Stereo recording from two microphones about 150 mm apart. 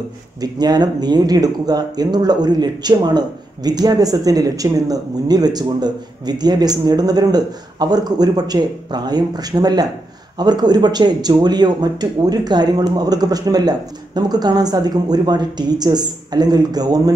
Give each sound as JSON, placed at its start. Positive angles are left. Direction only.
{"t": 0.4, "sound": "speech", "side_deg": -25}